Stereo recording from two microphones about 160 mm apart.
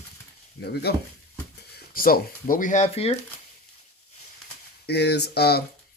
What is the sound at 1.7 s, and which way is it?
Speech, 65° left (ahead or behind).